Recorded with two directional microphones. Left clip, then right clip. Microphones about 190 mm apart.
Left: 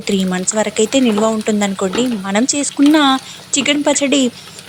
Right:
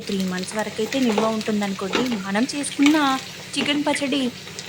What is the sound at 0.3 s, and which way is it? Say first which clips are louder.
Speech: left 9 dB; 30° left (ahead or behind).